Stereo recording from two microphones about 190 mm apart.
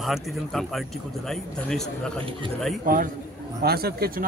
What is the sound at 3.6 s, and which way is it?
Speech, 55° right (ahead or behind).